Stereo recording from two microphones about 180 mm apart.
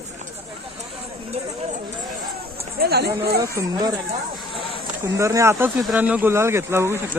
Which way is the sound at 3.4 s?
20° right (ahead or behind).